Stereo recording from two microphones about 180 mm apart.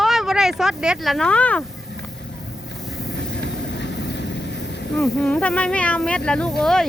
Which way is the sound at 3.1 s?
70° left (ahead or behind).